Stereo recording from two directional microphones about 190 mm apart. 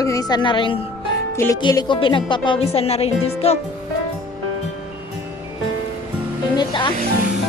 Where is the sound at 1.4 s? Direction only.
15° left (ahead or behind); by 3.6 s 30° left (ahead or behind).